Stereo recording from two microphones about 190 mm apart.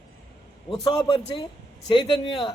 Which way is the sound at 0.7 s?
25° left (ahead or behind).